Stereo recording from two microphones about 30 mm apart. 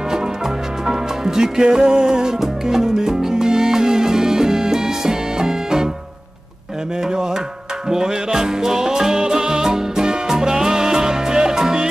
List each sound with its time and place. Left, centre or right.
0.8 s music: centre
7.9 s music: centre